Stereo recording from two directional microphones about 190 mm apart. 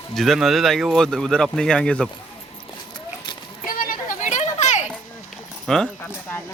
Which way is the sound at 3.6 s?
45° left (ahead or behind).